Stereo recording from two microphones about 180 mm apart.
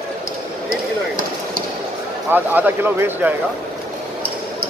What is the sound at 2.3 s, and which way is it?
Speech, 10° right (ahead or behind).